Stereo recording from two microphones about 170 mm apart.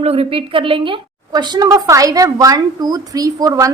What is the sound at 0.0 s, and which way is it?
A woman's voice, 35° right (ahead or behind).